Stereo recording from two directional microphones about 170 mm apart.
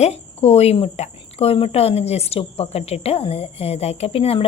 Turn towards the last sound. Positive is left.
turn(degrees=35)  # may be behind; listen again after turning